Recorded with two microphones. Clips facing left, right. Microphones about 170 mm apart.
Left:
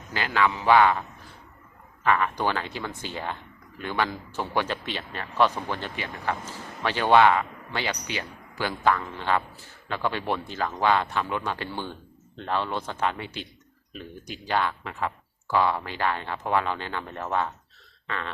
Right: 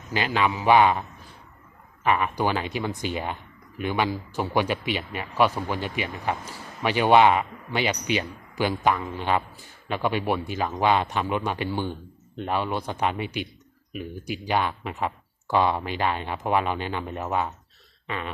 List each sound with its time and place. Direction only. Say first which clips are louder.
0.1 s a man's voice: right 1 dB; 20° right (ahead or behind)
2.0 s a man's voice: right 1 dB; 15° right (ahead or behind)